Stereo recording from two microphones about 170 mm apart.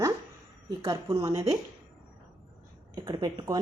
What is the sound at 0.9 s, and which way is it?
Speech, 25° right (ahead or behind).